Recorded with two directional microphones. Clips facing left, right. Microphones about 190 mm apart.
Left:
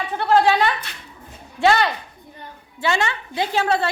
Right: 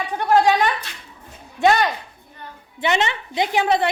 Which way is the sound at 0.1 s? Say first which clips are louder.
Even; 15° right (ahead or behind).